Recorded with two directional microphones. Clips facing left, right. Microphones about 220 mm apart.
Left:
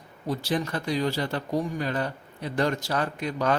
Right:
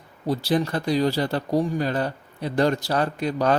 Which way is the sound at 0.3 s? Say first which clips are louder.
Right 5 dB; 35° right (ahead or behind).